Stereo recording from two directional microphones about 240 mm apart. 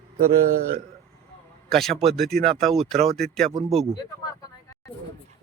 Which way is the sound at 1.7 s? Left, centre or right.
Centre.